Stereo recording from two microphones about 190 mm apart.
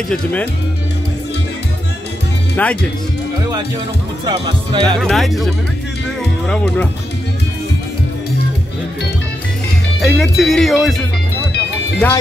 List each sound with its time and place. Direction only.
0.1 s speech: 5° left (ahead or behind)
2.5 s speech: 5° left (ahead or behind)
4.3 s speech: 25° right (ahead or behind)
5.0 s speech: centre (ahead or behind)
9.9 s speech: centre (ahead or behind)
12.0 s speech: 10° left (ahead or behind)